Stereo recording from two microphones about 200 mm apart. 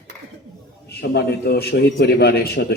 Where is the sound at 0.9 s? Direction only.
55° left (ahead or behind).